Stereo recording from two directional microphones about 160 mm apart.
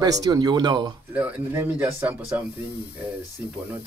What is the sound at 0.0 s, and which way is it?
Speech, 25° right (ahead or behind).